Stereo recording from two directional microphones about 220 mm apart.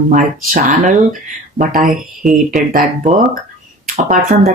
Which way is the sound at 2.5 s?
35° right (ahead or behind).